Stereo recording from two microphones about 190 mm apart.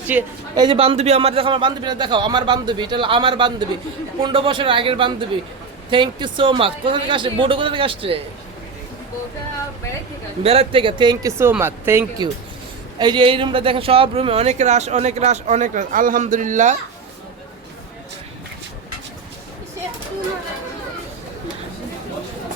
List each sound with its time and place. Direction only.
0.1 s a woman's voice: 10° right (ahead or behind)
0.5 s a man's voice: 25° right (ahead or behind)
10.4 s a man's voice: 30° right (ahead or behind); by 12.0 s 10° right (ahead or behind)
13.0 s speech: 25° right (ahead or behind); by 16.7 s 40° right (ahead or behind)